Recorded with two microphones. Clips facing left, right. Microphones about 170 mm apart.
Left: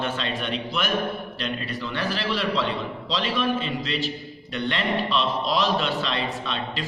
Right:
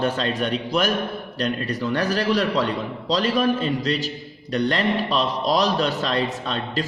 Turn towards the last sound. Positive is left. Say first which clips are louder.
# right 4 dB
turn(degrees=-40)  # may be behind; listen again after turning